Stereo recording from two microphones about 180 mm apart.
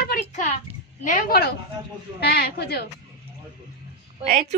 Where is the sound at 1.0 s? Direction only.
50° left (ahead or behind).